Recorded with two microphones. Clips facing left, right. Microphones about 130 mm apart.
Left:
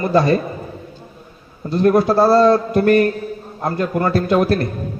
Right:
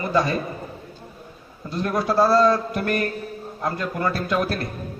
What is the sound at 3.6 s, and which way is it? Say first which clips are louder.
Speech: left 6 dB; 40° left (ahead or behind).